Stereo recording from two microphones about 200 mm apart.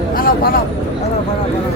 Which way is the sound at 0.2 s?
45° left (ahead or behind).